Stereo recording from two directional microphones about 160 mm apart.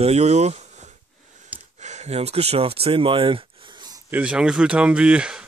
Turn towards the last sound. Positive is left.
turn(degrees=-5)  # may be behind; listen again after turning